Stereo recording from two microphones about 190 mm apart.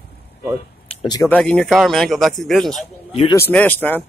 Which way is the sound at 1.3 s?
5° left (ahead or behind).